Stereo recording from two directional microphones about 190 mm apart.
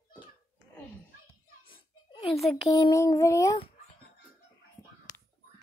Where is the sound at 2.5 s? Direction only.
15° left (ahead or behind).